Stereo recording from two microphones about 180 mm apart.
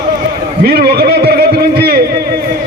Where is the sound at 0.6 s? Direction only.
55° right (ahead or behind).